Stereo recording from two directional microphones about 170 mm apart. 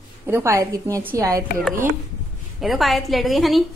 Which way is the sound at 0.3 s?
15° right (ahead or behind).